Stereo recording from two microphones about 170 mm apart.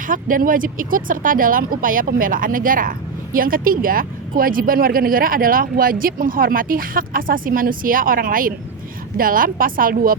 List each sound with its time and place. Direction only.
0.1 s speech: 55° right (ahead or behind)